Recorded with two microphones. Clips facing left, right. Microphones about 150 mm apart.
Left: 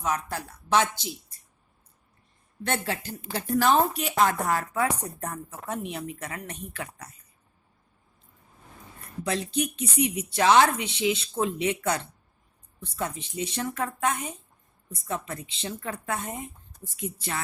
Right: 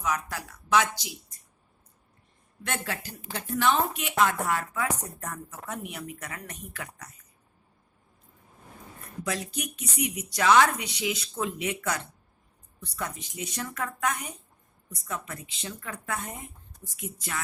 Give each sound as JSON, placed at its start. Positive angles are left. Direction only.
{"t": 0.0, "sound": "a woman's voice", "side_deg": 30}
{"t": 2.6, "sound": "a woman's voice", "side_deg": 30}
{"t": 3.4, "sound": "a woman's voice", "side_deg": 40}
{"t": 9.2, "sound": "a woman's voice", "side_deg": 30}